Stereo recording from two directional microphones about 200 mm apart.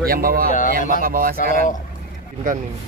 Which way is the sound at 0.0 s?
50° right (ahead or behind).